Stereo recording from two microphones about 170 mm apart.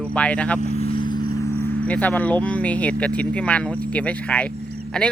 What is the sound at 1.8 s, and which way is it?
Speech, 10° left (ahead or behind).